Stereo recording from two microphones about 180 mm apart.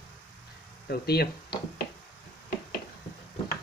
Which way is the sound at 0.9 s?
60° left (ahead or behind).